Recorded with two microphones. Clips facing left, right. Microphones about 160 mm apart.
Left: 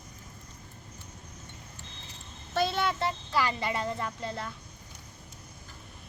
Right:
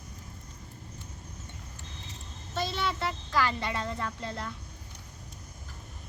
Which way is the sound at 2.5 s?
60° left (ahead or behind).